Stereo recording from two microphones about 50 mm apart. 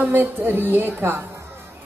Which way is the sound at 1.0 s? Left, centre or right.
Right.